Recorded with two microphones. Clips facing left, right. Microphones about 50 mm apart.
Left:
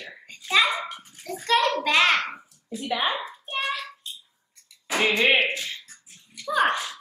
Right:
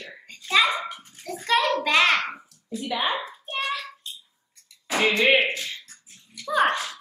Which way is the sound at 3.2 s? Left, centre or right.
Centre.